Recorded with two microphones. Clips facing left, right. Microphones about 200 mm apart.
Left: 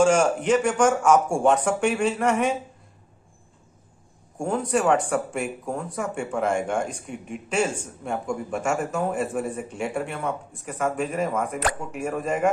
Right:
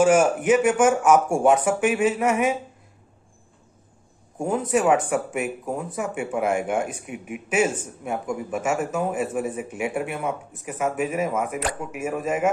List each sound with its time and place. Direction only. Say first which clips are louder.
0.0 s speech: right 2 dB; 5° right (ahead or behind)
4.4 s speech: right 1 dB; 5° right (ahead or behind)